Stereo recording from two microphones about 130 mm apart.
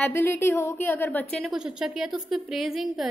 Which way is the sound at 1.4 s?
5° right (ahead or behind).